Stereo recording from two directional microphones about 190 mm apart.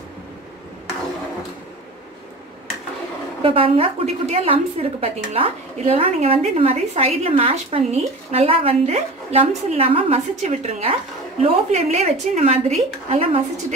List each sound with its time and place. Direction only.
3.4 s speech: 30° right (ahead or behind)